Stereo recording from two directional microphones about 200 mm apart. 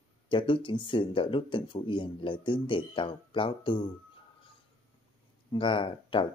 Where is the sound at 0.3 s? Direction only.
25° left (ahead or behind).